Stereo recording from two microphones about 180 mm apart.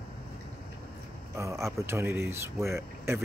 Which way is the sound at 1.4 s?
15° right (ahead or behind).